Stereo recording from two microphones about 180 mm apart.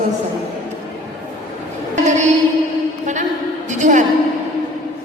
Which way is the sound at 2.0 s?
40° right (ahead or behind).